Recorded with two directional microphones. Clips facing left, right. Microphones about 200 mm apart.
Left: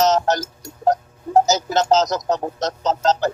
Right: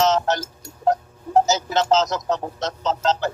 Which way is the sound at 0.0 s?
40° left (ahead or behind).